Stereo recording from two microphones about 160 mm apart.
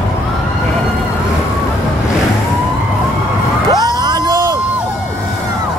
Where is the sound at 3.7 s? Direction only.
25° right (ahead or behind).